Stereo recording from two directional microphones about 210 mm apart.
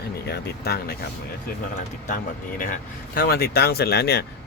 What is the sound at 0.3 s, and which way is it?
Speech, 50° left (ahead or behind).